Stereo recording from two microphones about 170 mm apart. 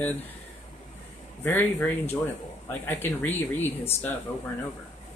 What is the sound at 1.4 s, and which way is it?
Speech, 15° left (ahead or behind).